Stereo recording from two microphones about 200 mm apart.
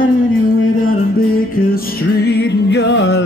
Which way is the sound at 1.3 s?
45° left (ahead or behind).